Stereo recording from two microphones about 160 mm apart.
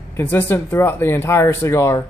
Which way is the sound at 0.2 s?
15° left (ahead or behind).